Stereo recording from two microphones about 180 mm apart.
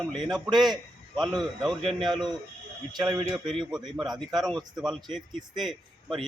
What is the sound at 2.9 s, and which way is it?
Speech, 25° right (ahead or behind).